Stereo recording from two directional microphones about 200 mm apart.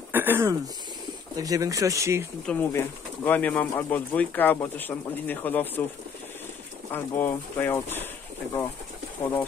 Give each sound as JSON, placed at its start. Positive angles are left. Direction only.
{"t": 0.1, "sound": "throat clearing", "side_deg": -10}
{"t": 1.3, "sound": "speech", "side_deg": -20}
{"t": 2.4, "sound": "speech", "side_deg": 10}
{"t": 6.9, "sound": "speech", "side_deg": 10}